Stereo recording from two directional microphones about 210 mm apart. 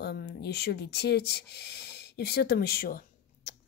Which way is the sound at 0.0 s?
50° left (ahead or behind).